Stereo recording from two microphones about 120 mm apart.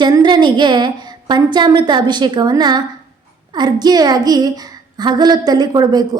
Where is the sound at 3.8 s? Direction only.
35° right (ahead or behind).